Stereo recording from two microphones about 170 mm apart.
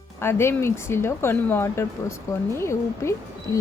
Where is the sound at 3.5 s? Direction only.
20° left (ahead or behind).